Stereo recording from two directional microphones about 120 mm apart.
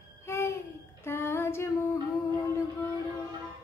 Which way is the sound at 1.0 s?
20° left (ahead or behind).